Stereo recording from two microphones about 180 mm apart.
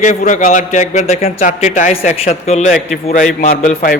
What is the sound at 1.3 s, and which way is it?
A man's voice, 50° left (ahead or behind).